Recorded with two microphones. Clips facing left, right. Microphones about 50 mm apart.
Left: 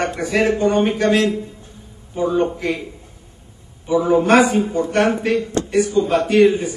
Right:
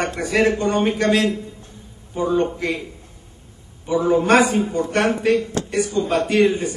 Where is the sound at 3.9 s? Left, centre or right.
Centre.